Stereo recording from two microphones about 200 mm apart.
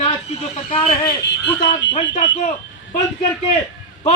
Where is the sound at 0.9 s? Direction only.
60° left (ahead or behind).